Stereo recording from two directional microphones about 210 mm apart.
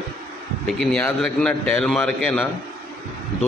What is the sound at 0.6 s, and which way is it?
A man's voice, 5° left (ahead or behind).